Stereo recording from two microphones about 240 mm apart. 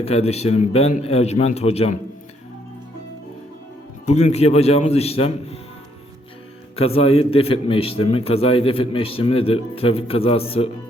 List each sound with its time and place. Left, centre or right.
0.0 s a man's voice: left
4.0 s a man's voice: left
6.7 s a man's voice: left